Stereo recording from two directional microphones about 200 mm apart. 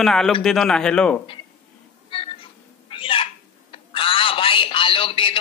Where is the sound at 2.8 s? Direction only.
25° left (ahead or behind).